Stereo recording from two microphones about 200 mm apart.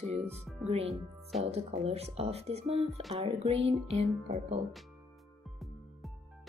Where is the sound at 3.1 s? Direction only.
30° right (ahead or behind).